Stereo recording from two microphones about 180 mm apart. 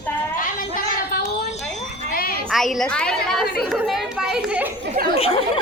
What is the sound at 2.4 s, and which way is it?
Chatter, centre (ahead or behind).